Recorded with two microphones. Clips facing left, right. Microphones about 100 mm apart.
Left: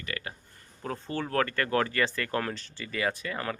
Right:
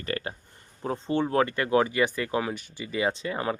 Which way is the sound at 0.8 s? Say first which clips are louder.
Right 6 dB; 20° right (ahead or behind).